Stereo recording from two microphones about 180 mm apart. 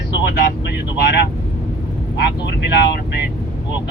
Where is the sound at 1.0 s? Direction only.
65° left (ahead or behind).